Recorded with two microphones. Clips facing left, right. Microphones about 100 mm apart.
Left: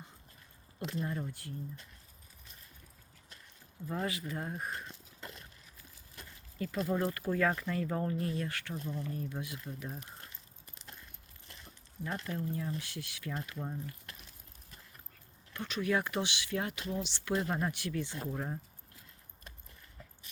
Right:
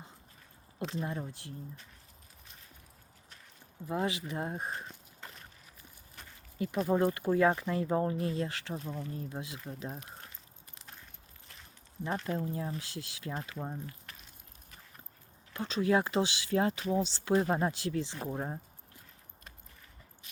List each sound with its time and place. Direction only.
1.0 s speech: 25° right (ahead or behind)
3.8 s speech: 20° right (ahead or behind)
6.6 s speech: 20° right (ahead or behind)
12.0 s speech: 30° right (ahead or behind)
15.5 s speech: 30° right (ahead or behind)